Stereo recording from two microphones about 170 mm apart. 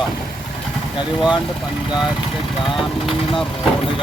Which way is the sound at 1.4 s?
Centre (ahead or behind).